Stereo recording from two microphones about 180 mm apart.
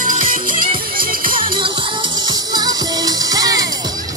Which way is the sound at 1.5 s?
25° right (ahead or behind).